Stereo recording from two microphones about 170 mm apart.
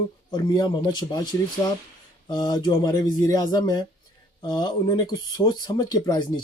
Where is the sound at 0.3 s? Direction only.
25° left (ahead or behind).